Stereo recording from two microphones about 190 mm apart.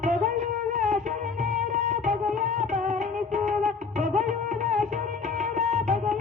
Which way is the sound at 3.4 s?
40° right (ahead or behind).